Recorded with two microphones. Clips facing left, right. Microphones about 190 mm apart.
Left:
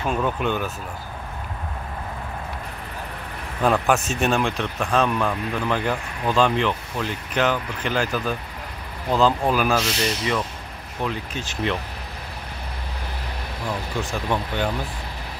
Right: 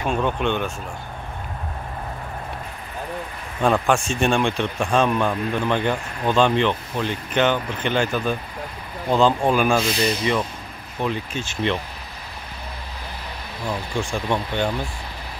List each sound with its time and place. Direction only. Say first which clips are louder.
0.1 s speech: right 1 dB; 5° left (ahead or behind)
3.6 s speech: right 1 dB; 5° left (ahead or behind)
9.8 s speech: right 3 dB; 75° left (ahead or behind)
11.1 s speech: right 4 dB; centre (ahead or behind)
13.9 s speech: right 2 dB; 5° left (ahead or behind)